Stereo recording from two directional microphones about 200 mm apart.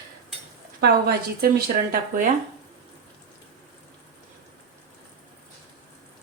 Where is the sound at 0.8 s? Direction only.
50° right (ahead or behind).